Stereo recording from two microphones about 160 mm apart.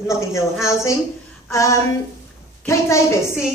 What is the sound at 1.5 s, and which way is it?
A woman's voice, 20° left (ahead or behind).